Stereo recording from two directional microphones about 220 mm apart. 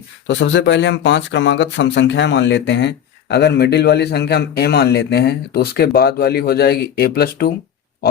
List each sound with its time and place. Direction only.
0.3 s speech: 55° left (ahead or behind)